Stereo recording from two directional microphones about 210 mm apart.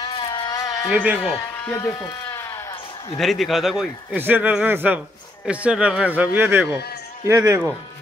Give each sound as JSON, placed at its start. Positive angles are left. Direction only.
{"t": 0.0, "sound": "sheep", "side_deg": 20}
{"t": 0.8, "sound": "a man's voice", "side_deg": -5}
{"t": 1.4, "sound": "speech", "side_deg": 10}
{"t": 3.2, "sound": "a man's voice", "side_deg": 0}